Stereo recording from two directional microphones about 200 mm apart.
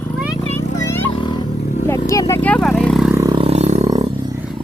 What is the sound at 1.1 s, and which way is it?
Vehicle, 25° left (ahead or behind).